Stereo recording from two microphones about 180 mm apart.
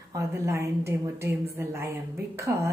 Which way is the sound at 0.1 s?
15° right (ahead or behind).